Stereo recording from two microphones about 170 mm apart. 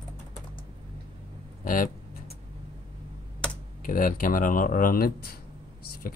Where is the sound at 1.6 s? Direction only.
55° left (ahead or behind).